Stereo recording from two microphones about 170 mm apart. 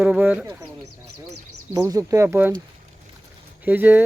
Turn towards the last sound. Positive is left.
turn(degrees=-10)  # may be behind; listen again after turning